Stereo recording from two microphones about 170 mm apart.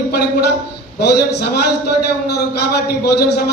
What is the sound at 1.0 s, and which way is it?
Speech, 70° left (ahead or behind).